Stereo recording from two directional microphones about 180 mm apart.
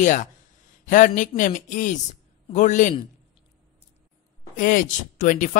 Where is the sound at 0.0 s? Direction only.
45° left (ahead or behind).